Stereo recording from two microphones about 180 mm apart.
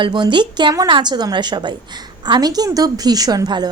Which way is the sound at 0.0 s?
25° right (ahead or behind).